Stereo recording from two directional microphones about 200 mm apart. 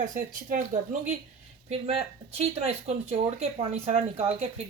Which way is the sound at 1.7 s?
30° right (ahead or behind).